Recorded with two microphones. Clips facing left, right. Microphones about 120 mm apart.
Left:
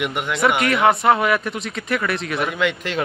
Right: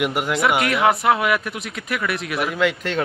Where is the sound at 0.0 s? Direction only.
5° right (ahead or behind).